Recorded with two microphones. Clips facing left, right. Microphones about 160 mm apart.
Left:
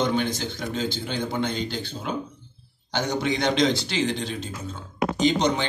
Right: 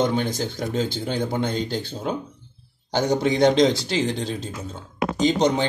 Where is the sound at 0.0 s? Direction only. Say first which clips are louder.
Right 2 dB; 40° right (ahead or behind).